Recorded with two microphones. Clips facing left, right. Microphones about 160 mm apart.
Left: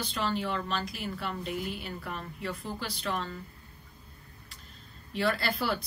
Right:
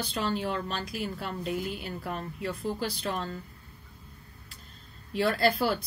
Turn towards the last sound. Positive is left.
turn(degrees=-45)  # may be behind; listen again after turning